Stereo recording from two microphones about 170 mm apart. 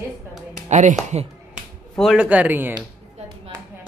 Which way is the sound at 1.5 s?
Centre (ahead or behind).